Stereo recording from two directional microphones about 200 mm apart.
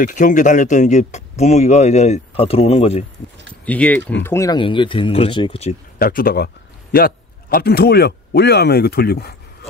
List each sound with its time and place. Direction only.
0.0 s speech: 40° left (ahead or behind)
3.6 s speech: 5° left (ahead or behind); by 5.8 s 30° left (ahead or behind)
5.9 s a man's voice: 45° left (ahead or behind)